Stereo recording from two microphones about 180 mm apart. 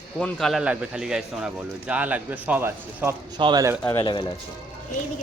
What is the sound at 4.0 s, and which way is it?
Speech, 25° left (ahead or behind).